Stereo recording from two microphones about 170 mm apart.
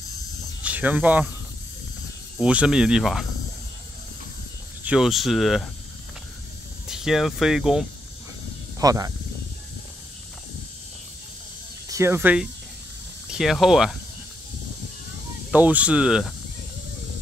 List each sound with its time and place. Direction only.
0.6 s speech: 10° right (ahead or behind)
2.4 s speech: 5° right (ahead or behind)
4.8 s speech: 5° right (ahead or behind)
6.9 s speech: centre (ahead or behind)
8.7 s speech: 20° right (ahead or behind)
11.9 s speech: 15° right (ahead or behind)
15.5 s speech: 10° right (ahead or behind)